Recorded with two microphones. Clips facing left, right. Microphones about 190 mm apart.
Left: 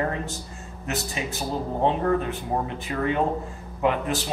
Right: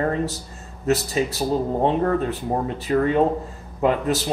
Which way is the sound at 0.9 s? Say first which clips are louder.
Right 9 dB; 35° right (ahead or behind).